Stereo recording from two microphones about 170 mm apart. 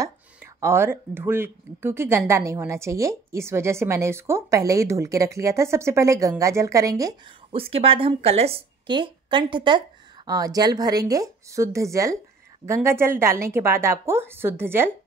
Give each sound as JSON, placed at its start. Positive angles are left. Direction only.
{"t": 0.0, "sound": "speech", "side_deg": -15}
{"t": 7.5, "sound": "a woman's voice", "side_deg": -35}